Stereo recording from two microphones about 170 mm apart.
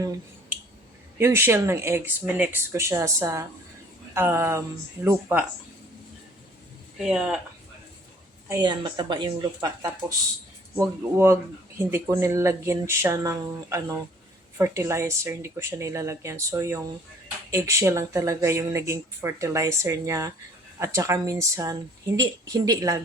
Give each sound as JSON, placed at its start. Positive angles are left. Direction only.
{"t": 1.2, "sound": "speech", "side_deg": -15}
{"t": 7.0, "sound": "speech", "side_deg": -5}
{"t": 8.4, "sound": "speech", "side_deg": -25}
{"t": 10.8, "sound": "speech", "side_deg": -15}